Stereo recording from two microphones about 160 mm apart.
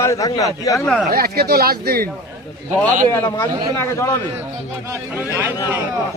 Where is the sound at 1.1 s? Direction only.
80° right.